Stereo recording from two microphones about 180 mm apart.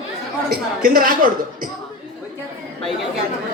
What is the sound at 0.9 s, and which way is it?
Speech, 55° right (ahead or behind).